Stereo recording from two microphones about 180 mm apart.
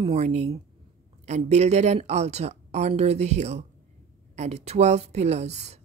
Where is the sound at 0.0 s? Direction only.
35° right (ahead or behind).